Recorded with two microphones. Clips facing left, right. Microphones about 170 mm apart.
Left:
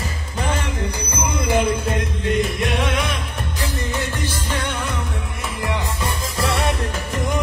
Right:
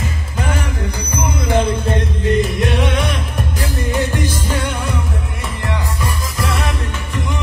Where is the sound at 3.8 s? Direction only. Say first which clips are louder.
Right 6 dB; 10° right (ahead or behind).